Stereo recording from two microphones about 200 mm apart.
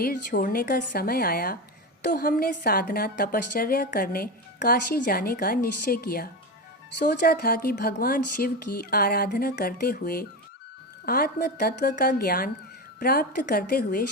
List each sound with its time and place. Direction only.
0.0 s a woman's voice: 45° left (ahead or behind)